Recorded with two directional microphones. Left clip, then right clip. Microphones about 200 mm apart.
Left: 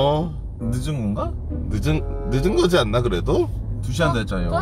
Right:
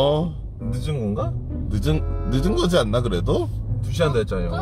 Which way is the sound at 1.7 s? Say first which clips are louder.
Left 1 dB; 20° right (ahead or behind).